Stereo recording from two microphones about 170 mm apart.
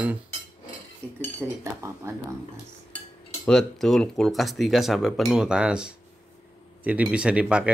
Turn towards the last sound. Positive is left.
turn(degrees=-5)  # may be behind; listen again after turning